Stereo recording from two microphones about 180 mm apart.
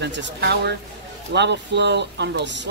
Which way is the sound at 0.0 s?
75° right (ahead or behind).